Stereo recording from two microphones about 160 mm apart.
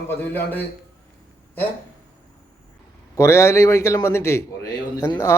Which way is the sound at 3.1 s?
20° left (ahead or behind).